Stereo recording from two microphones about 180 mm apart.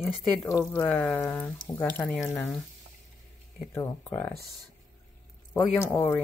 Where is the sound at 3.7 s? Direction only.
15° left (ahead or behind).